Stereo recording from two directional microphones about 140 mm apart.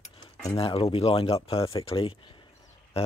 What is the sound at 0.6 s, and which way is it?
Speech, 45° left (ahead or behind).